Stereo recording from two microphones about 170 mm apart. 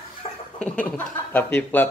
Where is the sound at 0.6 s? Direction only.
5° left (ahead or behind).